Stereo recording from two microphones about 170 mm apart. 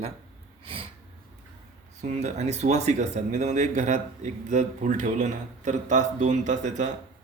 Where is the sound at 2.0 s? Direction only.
40° right (ahead or behind).